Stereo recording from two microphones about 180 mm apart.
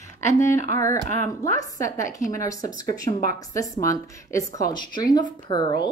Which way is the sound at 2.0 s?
45° left (ahead or behind).